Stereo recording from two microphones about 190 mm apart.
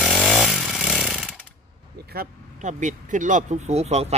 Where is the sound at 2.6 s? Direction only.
40° right (ahead or behind).